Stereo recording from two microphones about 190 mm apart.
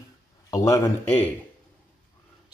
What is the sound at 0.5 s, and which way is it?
Speech, 15° left (ahead or behind).